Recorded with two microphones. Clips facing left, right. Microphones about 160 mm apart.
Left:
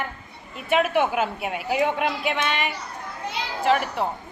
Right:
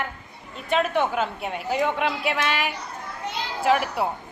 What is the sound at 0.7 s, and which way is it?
Speech, 10° left (ahead or behind).